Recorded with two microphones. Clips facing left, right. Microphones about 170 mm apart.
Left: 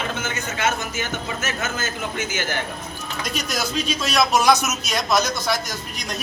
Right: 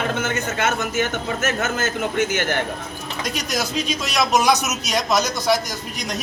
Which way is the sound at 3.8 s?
15° right (ahead or behind).